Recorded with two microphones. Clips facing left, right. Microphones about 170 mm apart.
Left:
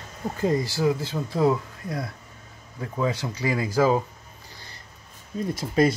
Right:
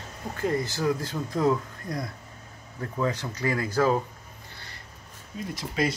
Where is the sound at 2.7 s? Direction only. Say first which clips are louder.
Left 2 dB; 10° left (ahead or behind).